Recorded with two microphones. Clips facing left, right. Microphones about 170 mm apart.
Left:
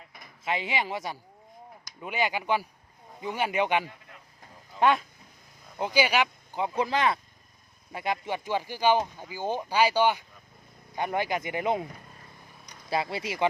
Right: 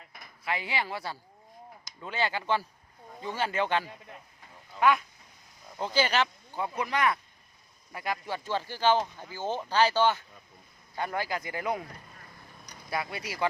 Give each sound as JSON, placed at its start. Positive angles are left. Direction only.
{"t": 0.4, "sound": "speech", "side_deg": 20}
{"t": 4.8, "sound": "speech", "side_deg": 30}
{"t": 5.8, "sound": "speech", "side_deg": 10}
{"t": 6.7, "sound": "speech", "side_deg": 25}
{"t": 12.9, "sound": "speech", "side_deg": 25}